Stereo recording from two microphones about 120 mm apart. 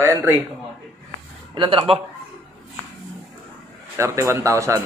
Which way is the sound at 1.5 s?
45° right (ahead or behind).